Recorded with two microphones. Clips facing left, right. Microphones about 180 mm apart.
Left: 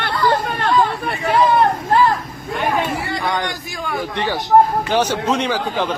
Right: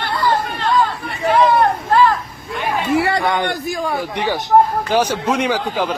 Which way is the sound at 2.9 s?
70° right (ahead or behind).